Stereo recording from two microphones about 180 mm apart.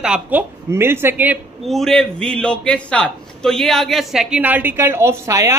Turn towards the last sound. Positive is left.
turn(degrees=-15)  # may be behind; listen again after turning